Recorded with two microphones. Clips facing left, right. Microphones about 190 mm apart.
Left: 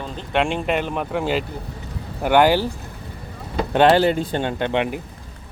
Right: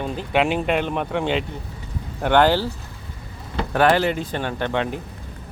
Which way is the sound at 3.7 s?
25° left (ahead or behind).